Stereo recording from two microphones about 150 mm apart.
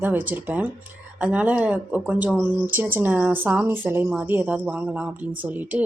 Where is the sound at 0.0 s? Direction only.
10° right (ahead or behind).